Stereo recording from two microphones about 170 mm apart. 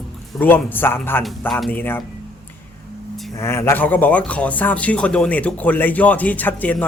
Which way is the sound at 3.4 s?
15° left (ahead or behind).